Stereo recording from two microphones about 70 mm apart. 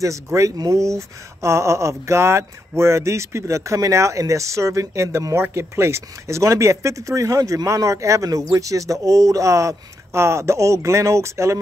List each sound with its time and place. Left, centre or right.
0.0 s speech: right